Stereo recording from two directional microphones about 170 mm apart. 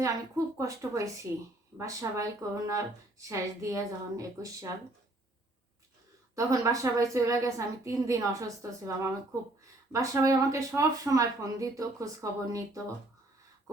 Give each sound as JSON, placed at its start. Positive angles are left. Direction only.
{"t": 0.0, "sound": "a woman's voice", "side_deg": -20}
{"t": 6.3, "sound": "speech", "side_deg": -20}